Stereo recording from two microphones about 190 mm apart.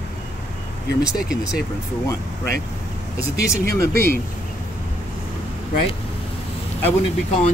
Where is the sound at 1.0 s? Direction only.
5° right (ahead or behind).